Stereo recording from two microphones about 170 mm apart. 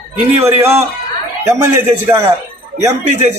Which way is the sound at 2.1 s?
15° right (ahead or behind).